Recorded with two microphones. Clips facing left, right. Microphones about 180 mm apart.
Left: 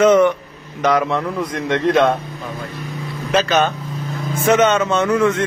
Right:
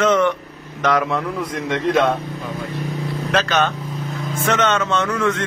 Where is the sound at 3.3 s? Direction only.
5° left (ahead or behind).